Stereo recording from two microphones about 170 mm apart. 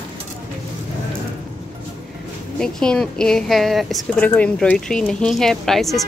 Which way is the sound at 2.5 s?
5° left (ahead or behind).